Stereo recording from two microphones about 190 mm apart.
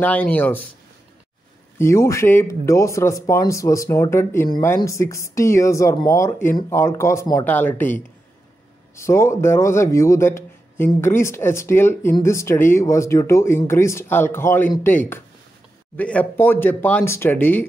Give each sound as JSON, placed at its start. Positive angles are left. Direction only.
{"t": 0.0, "sound": "speech", "side_deg": 10}
{"t": 1.8, "sound": "speech", "side_deg": 15}